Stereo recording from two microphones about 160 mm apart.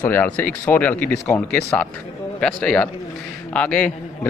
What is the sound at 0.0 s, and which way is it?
A man's voice, 10° left (ahead or behind).